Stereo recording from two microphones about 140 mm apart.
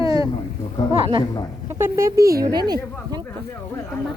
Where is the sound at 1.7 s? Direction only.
20° right (ahead or behind).